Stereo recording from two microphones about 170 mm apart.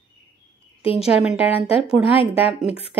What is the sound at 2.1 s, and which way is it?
Speech, 35° left (ahead or behind).